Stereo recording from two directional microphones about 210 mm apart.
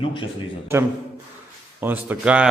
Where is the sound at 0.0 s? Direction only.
25° left (ahead or behind).